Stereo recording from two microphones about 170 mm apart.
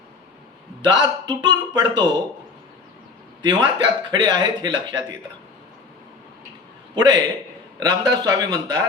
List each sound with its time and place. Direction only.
0.8 s speech: 25° right (ahead or behind)
3.4 s speech: 25° right (ahead or behind)
6.9 s speech: 25° right (ahead or behind)